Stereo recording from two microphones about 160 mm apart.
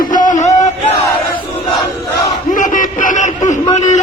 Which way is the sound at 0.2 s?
55° left (ahead or behind).